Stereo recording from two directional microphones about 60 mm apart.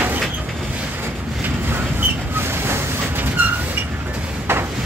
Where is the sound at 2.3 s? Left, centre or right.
Right.